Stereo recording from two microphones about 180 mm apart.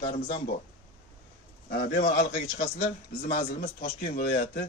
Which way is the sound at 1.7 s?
70° left (ahead or behind).